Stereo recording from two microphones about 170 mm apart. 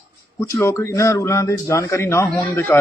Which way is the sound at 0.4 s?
15° left (ahead or behind).